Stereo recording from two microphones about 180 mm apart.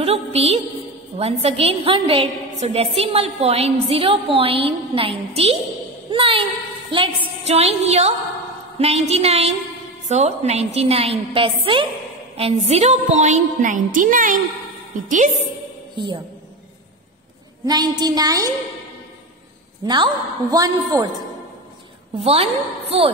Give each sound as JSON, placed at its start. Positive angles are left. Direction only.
{"t": 0.0, "sound": "music", "side_deg": -35}
{"t": 1.1, "sound": "a woman's voice", "side_deg": -35}
{"t": 6.0, "sound": "a sound", "side_deg": -30}
{"t": 6.9, "sound": "a woman's voice", "side_deg": -30}
{"t": 17.6, "sound": "a woman's voice", "side_deg": -20}
{"t": 19.8, "sound": "a woman's voice", "side_deg": -25}
{"t": 22.2, "sound": "a woman's voice", "side_deg": -30}